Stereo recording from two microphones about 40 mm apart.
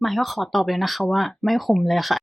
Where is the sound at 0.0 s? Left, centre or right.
Centre.